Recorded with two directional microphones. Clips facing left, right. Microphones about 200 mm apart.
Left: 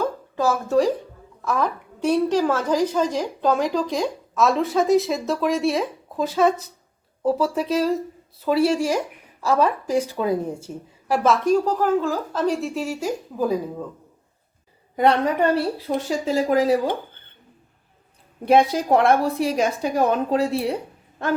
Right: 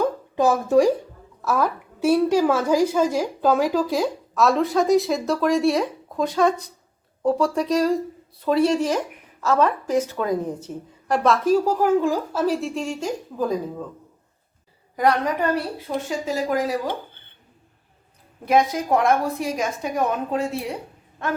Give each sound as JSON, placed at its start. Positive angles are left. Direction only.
{"t": 0.0, "sound": "a sound", "side_deg": -15}
{"t": 1.4, "sound": "a woman's voice", "side_deg": -5}
{"t": 14.9, "sound": "a woman's voice", "side_deg": 25}
{"t": 18.4, "sound": "a woman's voice", "side_deg": 30}